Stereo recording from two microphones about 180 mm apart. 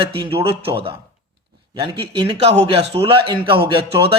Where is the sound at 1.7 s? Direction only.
25° right (ahead or behind).